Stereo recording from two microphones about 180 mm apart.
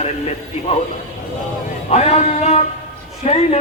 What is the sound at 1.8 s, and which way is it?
Speech, 35° left (ahead or behind).